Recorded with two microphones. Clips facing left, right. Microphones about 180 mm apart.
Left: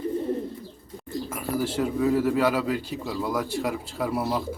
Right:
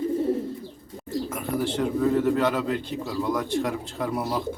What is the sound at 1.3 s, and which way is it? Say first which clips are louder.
Speech: left 1 dB; 5° left (ahead or behind).